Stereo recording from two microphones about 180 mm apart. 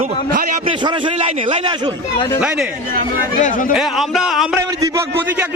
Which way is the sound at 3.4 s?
45° left (ahead or behind).